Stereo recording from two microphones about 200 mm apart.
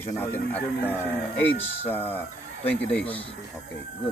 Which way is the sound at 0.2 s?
10° left (ahead or behind).